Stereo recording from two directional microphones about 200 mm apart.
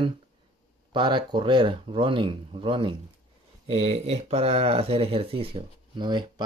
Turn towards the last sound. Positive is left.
turn(degrees=-20)  # may be behind; listen again after turning